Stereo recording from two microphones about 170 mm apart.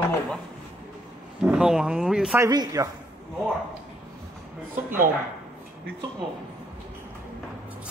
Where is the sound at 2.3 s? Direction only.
20° right (ahead or behind).